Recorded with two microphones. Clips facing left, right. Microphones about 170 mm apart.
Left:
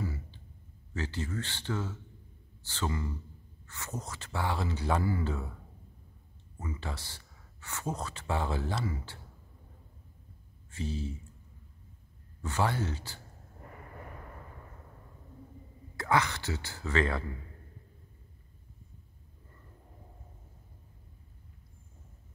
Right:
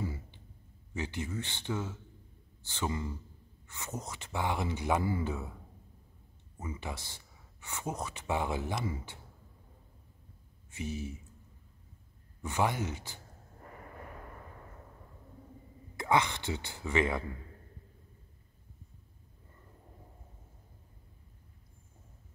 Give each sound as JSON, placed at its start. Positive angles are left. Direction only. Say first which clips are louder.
{"t": 0.0, "sound": "a sound", "louder": "left 1 dB", "side_deg": -25}
{"t": 0.9, "sound": "speech", "louder": "left 1 dB", "side_deg": -15}
{"t": 6.7, "sound": "speech", "louder": "even", "side_deg": -15}
{"t": 10.7, "sound": "speech", "louder": "left 2 dB", "side_deg": -15}
{"t": 12.4, "sound": "speech", "louder": "even", "side_deg": -15}
{"t": 16.0, "sound": "speech", "louder": "even", "side_deg": -20}